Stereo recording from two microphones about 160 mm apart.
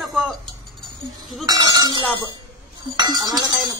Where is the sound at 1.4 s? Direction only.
25° right (ahead or behind).